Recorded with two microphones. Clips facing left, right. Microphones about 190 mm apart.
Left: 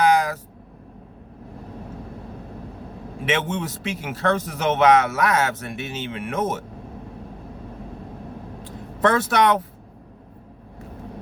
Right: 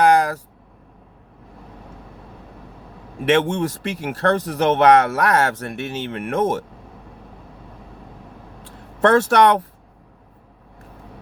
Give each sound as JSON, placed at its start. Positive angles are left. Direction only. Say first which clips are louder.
{"t": 0.0, "sound": "vehicle", "louder": "right 3 dB", "side_deg": -55}
{"t": 3.2, "sound": "speech", "louder": "right 7 dB", "side_deg": -55}
{"t": 9.0, "sound": "speech", "louder": "right 4 dB", "side_deg": -55}